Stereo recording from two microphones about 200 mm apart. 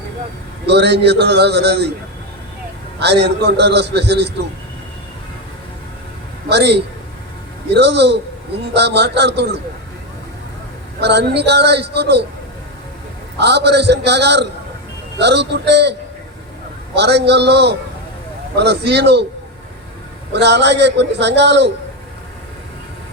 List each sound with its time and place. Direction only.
0.6 s a man's voice: 55° right (ahead or behind)
3.0 s a man's voice: 55° right (ahead or behind)
6.5 s a man's voice: 55° right (ahead or behind)
11.0 s a man's voice: 55° right (ahead or behind)
13.4 s a man's voice: 55° right (ahead or behind)
20.3 s a man's voice: 60° right (ahead or behind)